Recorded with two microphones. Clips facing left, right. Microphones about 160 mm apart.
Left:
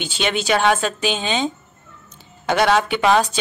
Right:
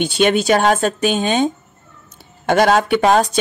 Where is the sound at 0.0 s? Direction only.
45° right (ahead or behind).